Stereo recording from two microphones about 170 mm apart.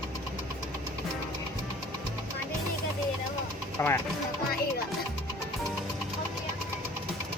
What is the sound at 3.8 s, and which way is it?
Speech, 15° left (ahead or behind).